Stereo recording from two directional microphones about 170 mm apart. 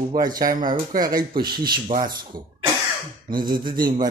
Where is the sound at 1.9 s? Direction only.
50° right (ahead or behind).